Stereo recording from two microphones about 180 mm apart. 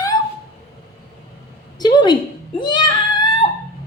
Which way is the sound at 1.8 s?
25° left (ahead or behind).